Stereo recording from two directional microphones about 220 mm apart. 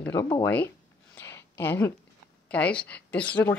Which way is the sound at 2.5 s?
5° left (ahead or behind).